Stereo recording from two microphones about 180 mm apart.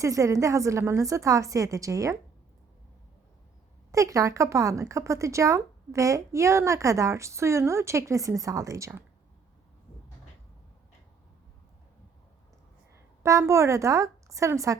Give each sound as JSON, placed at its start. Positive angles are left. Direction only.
{"t": 0.0, "sound": "speech", "side_deg": -15}
{"t": 3.9, "sound": "speech", "side_deg": -15}
{"t": 13.2, "sound": "speech", "side_deg": -15}